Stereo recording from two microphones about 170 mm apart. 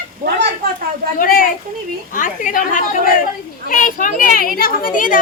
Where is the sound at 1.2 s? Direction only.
55° left (ahead or behind).